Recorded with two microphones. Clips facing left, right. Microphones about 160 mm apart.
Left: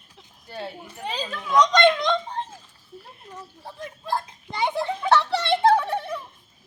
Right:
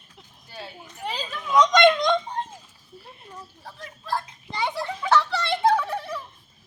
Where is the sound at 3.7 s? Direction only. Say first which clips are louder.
Left 2 dB; 20° left (ahead or behind).